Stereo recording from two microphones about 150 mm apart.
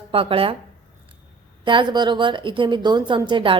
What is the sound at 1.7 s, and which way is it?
Speech, 30° right (ahead or behind).